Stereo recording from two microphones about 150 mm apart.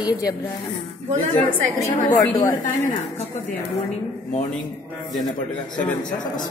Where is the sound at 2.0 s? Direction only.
25° left (ahead or behind).